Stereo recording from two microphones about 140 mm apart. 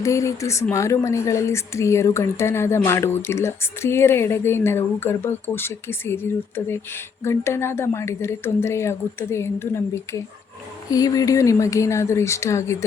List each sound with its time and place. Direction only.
0.0 s a woman's voice: 20° left (ahead or behind)